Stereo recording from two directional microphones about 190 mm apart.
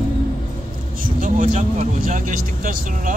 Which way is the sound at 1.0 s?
45° right (ahead or behind).